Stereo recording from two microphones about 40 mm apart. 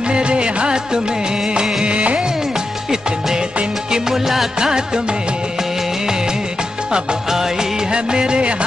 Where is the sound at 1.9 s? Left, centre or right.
Right.